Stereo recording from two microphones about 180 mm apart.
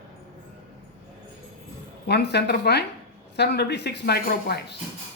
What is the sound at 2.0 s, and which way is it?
Speech, 65° left (ahead or behind).